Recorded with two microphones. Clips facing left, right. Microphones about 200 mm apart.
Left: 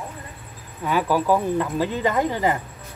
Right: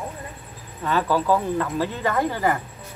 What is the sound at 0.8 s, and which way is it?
Speech, 10° left (ahead or behind).